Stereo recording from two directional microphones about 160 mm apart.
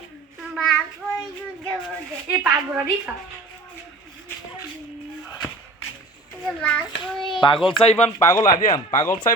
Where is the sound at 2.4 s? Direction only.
10° right (ahead or behind).